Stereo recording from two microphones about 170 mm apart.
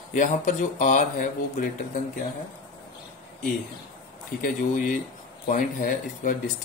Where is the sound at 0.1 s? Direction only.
50° left (ahead or behind).